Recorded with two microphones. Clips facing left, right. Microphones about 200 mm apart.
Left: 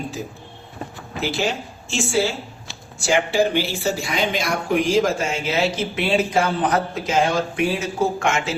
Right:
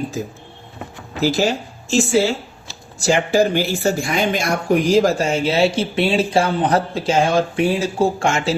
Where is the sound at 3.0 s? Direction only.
40° right (ahead or behind).